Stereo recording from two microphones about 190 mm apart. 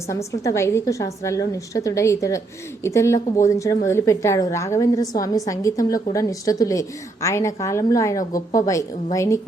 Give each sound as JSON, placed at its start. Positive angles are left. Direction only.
{"t": 0.1, "sound": "a woman's voice", "side_deg": 15}